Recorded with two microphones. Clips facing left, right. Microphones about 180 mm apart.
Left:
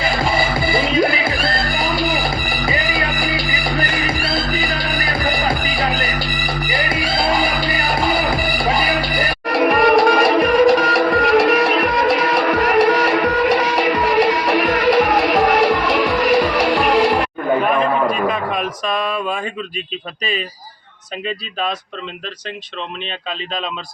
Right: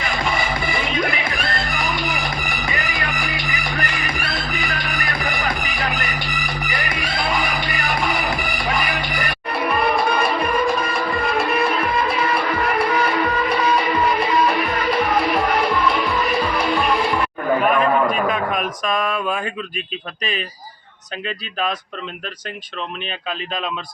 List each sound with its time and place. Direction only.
0.0 s music: 35° left (ahead or behind)
9.5 s music: 75° left (ahead or behind)
18.3 s a sound: 5° left (ahead or behind)